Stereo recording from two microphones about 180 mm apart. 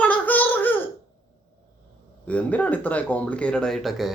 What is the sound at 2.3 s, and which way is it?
Speech, 10° left (ahead or behind).